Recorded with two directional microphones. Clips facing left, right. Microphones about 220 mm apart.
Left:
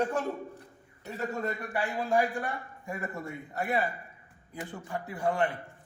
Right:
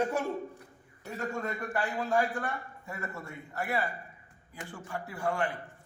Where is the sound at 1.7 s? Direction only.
15° left (ahead or behind).